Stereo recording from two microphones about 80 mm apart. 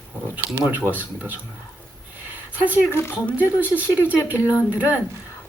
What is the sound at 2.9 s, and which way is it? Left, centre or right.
Speech, left.